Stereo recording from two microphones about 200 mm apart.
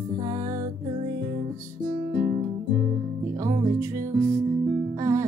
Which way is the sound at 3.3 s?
15° right (ahead or behind).